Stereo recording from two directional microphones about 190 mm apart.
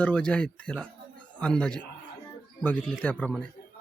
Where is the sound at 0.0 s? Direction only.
5° left (ahead or behind).